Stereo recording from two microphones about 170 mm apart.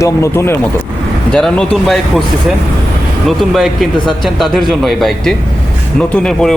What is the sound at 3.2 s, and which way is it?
Speech, centre (ahead or behind).